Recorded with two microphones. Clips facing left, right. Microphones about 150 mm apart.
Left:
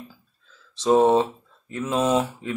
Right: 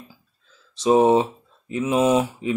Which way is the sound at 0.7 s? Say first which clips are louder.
Right 1 dB; 15° right (ahead or behind).